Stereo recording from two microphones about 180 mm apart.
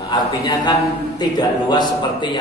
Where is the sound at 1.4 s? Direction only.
25° left (ahead or behind).